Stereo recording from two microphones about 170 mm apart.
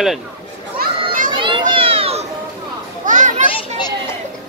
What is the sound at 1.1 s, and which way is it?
Children playing, 55° right (ahead or behind).